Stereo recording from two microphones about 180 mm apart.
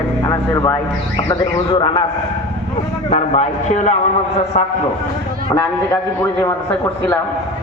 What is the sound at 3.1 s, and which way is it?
Speech, 35° left (ahead or behind).